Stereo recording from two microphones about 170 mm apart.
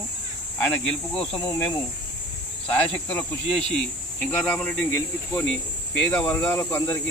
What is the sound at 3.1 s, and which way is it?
Speech, 10° left (ahead or behind).